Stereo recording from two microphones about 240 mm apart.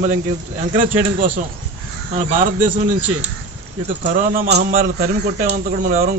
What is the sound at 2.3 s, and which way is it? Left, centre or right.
Speech, right.